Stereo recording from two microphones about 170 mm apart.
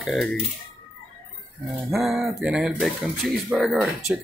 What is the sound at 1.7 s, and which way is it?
Speech, centre (ahead or behind).